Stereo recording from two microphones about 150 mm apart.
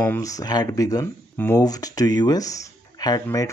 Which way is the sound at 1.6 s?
25° left (ahead or behind).